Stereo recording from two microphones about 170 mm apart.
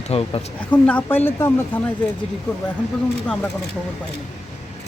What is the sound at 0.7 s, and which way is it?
Speech, 10° left (ahead or behind).